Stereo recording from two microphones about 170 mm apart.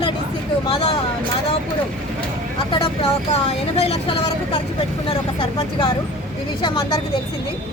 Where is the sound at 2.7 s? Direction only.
35° left (ahead or behind).